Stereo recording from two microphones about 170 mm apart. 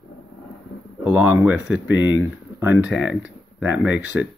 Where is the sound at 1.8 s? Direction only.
90° left.